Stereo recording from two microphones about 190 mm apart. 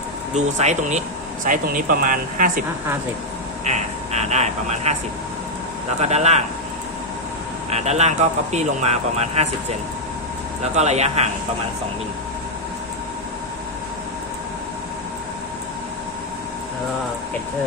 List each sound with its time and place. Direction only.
0.3 s speech: 40° right (ahead or behind)
3.6 s a sound: 35° right (ahead or behind)
6.0 s speech: 35° right (ahead or behind)
7.7 s speech: 35° right (ahead or behind)